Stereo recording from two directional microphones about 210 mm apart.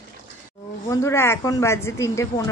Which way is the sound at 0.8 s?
10° left (ahead or behind).